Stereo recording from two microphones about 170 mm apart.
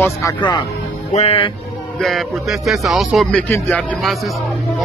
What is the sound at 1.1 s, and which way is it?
Speech, 35° left (ahead or behind).